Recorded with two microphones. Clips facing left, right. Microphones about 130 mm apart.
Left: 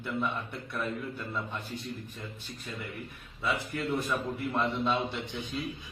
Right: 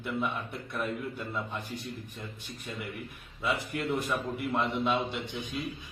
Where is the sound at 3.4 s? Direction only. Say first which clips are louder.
Right 1 dB; 15° right (ahead or behind).